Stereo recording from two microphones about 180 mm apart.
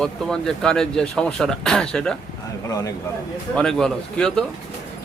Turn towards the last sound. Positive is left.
turn(degrees=5)  # may be behind; listen again after turning